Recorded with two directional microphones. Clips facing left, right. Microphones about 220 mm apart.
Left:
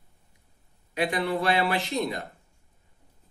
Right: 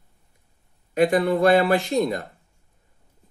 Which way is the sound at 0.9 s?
45° right (ahead or behind).